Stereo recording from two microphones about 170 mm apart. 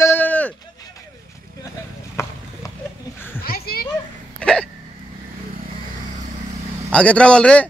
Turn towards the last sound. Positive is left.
turn(degrees=5)  # may be behind; listen again after turning